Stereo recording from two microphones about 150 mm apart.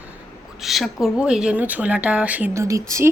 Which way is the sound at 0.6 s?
Centre (ahead or behind).